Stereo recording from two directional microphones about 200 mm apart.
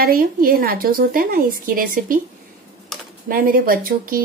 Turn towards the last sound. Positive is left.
turn(degrees=-45)  # may be behind; listen again after turning